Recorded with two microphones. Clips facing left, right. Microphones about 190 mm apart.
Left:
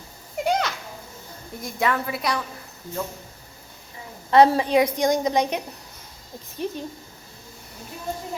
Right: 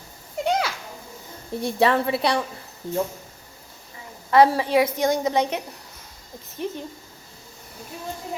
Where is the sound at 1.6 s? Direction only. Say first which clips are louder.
Right 5 dB; 30° right (ahead or behind).